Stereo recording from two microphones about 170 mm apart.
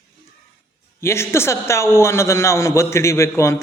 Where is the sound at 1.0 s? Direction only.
15° left (ahead or behind).